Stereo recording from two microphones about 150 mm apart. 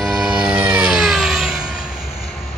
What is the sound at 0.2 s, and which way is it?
Vehicle, 10° right (ahead or behind).